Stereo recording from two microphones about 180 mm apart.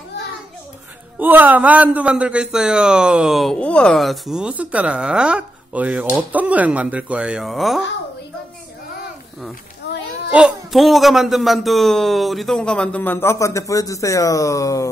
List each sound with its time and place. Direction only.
1.2 s a man's voice: 10° right (ahead or behind)
9.8 s a sound: 65° left (ahead or behind)
10.3 s a man's voice: 5° right (ahead or behind); by 14.9 s 20° left (ahead or behind)